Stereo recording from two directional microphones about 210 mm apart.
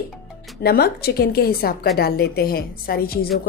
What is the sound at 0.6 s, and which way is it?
A woman's voice, 50° left (ahead or behind).